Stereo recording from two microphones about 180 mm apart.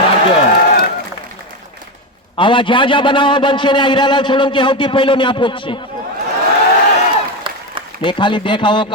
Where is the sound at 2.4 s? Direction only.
25° left (ahead or behind).